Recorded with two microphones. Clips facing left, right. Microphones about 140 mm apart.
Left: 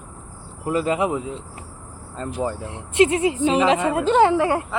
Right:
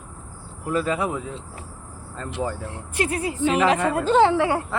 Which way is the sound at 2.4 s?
20° left (ahead or behind).